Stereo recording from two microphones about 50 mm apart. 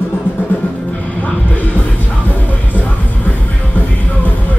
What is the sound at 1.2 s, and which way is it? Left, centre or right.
Music, left.